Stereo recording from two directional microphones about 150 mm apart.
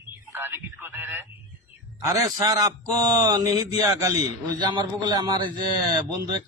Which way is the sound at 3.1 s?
25° right (ahead or behind).